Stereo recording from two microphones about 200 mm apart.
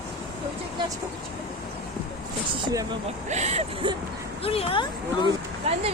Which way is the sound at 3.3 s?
35° right (ahead or behind).